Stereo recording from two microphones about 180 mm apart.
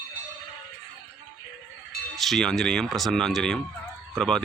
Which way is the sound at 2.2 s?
Centre (ahead or behind).